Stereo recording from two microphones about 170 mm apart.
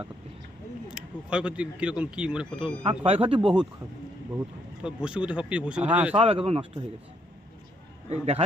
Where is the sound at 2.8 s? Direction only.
35° right (ahead or behind).